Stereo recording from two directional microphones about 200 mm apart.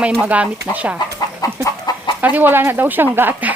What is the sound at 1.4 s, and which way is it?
Chicken, 15° left (ahead or behind).